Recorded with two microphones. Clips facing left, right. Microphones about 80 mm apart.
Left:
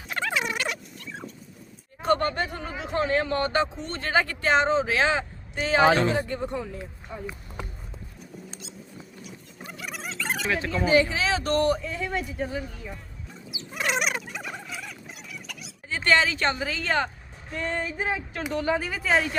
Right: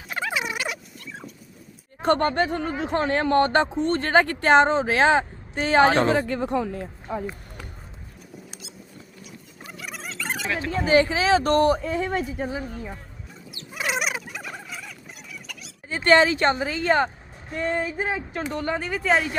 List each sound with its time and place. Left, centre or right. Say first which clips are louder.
0.1 s rodents: even; centre
2.0 s speech: right 3 dB; right
6.1 s speech: right 5 dB; right
8.4 s rodents: left 1 dB; centre
9.7 s rodents: even; centre
10.7 s speech: right 3 dB; right
12.4 s a woman's voice: right 1 dB; right
12.6 s speech: right 5 dB; right
13.3 s fowl: left 1 dB; centre
16.0 s speech: right 5 dB; right
16.4 s a woman's voice: right 5 dB; right
17.5 s a sound: right 4 dB; centre
18.5 s speech: left 2 dB; centre